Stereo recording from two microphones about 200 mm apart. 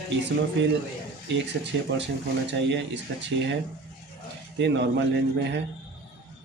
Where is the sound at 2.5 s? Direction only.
60° right (ahead or behind).